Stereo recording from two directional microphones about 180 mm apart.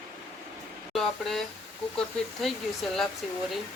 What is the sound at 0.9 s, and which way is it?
Speech, centre (ahead or behind).